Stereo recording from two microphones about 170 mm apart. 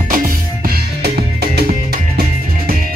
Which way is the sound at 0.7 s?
70° right (ahead or behind).